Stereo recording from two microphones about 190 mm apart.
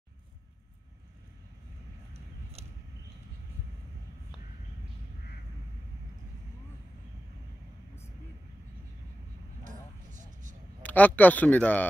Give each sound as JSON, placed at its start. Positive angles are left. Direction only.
{"t": 2.6, "sound": "a sound", "side_deg": -35}
{"t": 9.7, "sound": "vehicle", "side_deg": -40}
{"t": 10.8, "sound": "speech", "side_deg": 10}